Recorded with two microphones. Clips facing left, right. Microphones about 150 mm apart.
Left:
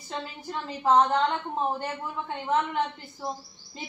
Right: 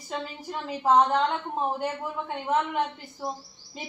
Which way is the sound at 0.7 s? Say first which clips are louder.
Even; 5° right (ahead or behind).